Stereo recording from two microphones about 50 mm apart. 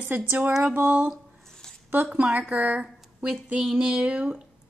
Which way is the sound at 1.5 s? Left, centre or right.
Centre.